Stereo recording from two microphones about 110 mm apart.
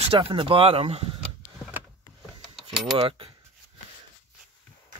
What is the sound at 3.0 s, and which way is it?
Speech, 55° right (ahead or behind).